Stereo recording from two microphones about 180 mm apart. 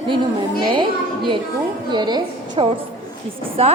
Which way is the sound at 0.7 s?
25° right (ahead or behind).